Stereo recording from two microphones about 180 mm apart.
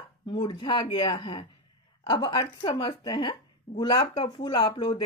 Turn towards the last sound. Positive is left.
turn(degrees=25)  # may be behind; listen again after turning